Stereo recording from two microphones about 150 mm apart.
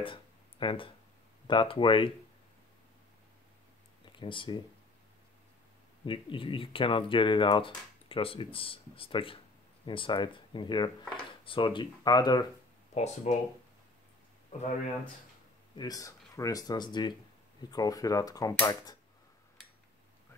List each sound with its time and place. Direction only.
0.0 s a sound: 35° left (ahead or behind)
1.5 s speech: 35° left (ahead or behind)
4.0 s a sound: 35° left (ahead or behind)
6.0 s speech: 35° left (ahead or behind)
12.9 s speech: 50° left (ahead or behind)
15.7 s speech: 25° left (ahead or behind)